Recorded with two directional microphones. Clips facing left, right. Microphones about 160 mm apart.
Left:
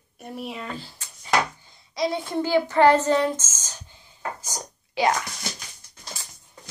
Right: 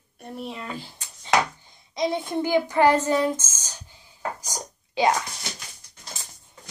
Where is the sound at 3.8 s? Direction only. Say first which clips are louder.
Right 1 dB; 15° right (ahead or behind).